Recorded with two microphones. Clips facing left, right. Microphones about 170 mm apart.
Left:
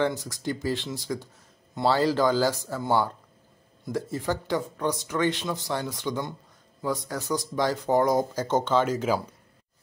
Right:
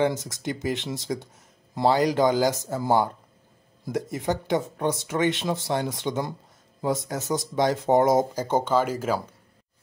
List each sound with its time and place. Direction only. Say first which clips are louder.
0.0 s speech: right 2 dB; 20° right (ahead or behind)
3.9 s speech: right 2 dB; 20° right (ahead or behind)
8.4 s speech: right 1 dB; 10° right (ahead or behind)